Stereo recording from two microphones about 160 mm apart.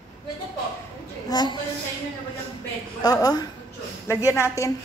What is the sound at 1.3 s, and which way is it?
Speech, 25° left (ahead or behind).